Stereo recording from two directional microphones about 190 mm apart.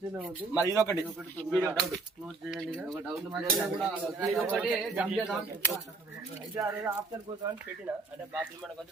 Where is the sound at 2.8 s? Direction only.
Centre (ahead or behind).